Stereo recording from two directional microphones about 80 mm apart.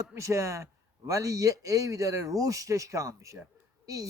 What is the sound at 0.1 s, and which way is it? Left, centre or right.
A man's voice, right.